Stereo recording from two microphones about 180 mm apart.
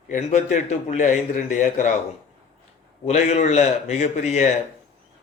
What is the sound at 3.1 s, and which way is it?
A man's voice, 40° left (ahead or behind).